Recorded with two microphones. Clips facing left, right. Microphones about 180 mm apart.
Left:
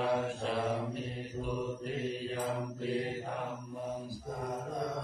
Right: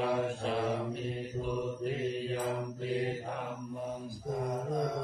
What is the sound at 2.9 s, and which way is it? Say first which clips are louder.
Mantra: right 2 dB; centre (ahead or behind).